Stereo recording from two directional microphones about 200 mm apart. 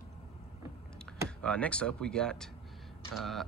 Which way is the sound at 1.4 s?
5° left (ahead or behind).